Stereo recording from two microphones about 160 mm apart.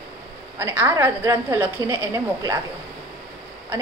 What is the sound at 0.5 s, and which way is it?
A woman's voice, 15° right (ahead or behind).